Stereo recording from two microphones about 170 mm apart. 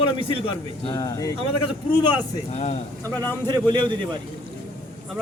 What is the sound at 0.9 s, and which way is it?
Speech, 20° left (ahead or behind).